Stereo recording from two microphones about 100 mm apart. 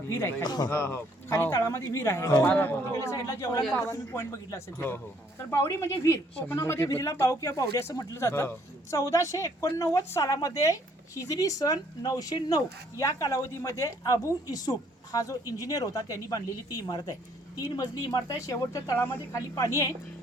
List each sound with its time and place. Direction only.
0.1 s speech: 25° left (ahead or behind)
0.4 s speech: 45° left (ahead or behind)
0.7 s speech: 25° left (ahead or behind)
2.5 s speech: 20° left (ahead or behind)